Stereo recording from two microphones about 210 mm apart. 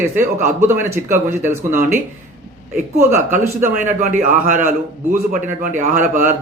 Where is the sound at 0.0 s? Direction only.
10° right (ahead or behind).